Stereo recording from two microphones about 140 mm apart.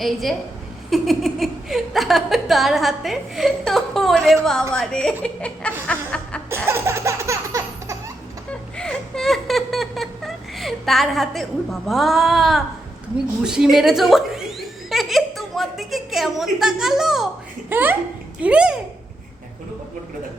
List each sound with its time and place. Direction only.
0.0 s speech: centre (ahead or behind)
5.2 s laughter: 10° left (ahead or behind)
5.9 s music: 10° left (ahead or behind)
6.7 s baby laughter: 20° right (ahead or behind)
8.8 s laughter: 5° left (ahead or behind)
13.4 s chuckle: 5° right (ahead or behind)
17.7 s a child's voice: 15° right (ahead or behind)